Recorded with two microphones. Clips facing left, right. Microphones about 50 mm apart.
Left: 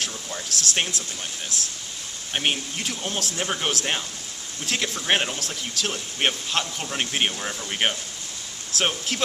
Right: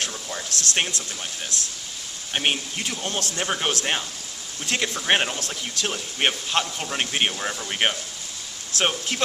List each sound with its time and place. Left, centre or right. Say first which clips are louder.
0.6 s speech: right 1 dB; centre
2.3 s speech: right 1 dB; centre